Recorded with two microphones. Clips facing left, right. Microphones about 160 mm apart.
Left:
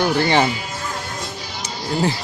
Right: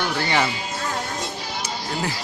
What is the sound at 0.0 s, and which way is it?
Speech, 30° left (ahead or behind).